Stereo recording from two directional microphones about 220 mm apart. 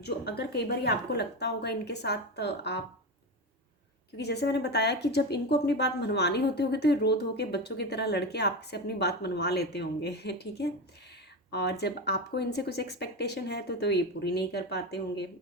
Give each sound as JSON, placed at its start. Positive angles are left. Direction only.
{"t": 0.0, "sound": "speech", "side_deg": 50}
{"t": 4.2, "sound": "speech", "side_deg": 50}